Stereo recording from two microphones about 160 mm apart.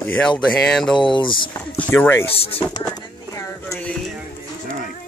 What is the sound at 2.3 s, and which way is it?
Speech, 35° left (ahead or behind).